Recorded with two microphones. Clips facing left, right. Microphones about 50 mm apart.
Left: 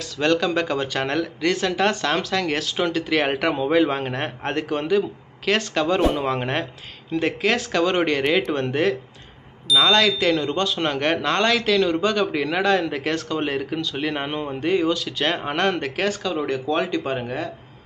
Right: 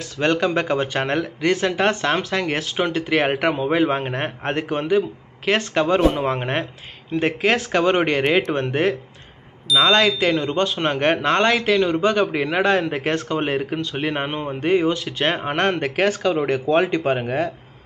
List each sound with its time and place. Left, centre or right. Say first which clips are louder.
0.2 s speech: right 1 dB; right